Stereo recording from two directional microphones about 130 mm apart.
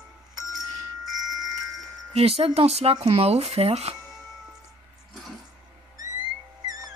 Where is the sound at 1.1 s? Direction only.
30° right (ahead or behind).